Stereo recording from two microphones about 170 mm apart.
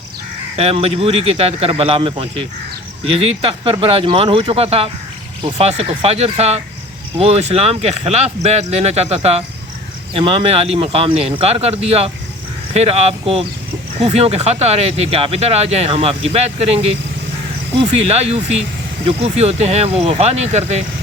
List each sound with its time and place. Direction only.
0.5 s speech: 35° right (ahead or behind)